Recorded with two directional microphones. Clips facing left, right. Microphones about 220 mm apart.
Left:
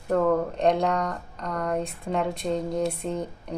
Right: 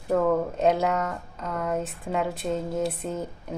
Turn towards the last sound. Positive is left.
turn(degrees=-5)  # may be behind; listen again after turning